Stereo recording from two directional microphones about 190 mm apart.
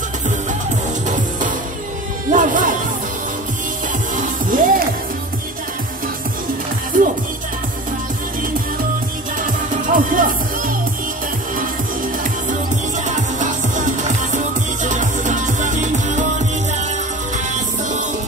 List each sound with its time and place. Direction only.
1.0 s music: 40° right (ahead or behind)
4.2 s music: 45° right (ahead or behind)
6.9 s music: 45° right (ahead or behind)
9.8 s music: 45° right (ahead or behind)
13.1 s music: 40° right (ahead or behind)